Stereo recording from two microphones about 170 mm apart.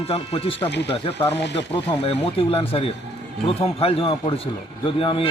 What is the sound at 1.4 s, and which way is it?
Speech, 90° left.